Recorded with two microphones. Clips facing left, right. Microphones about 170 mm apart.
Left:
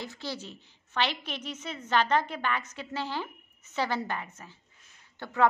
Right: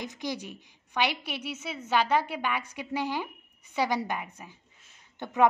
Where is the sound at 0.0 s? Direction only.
15° right (ahead or behind).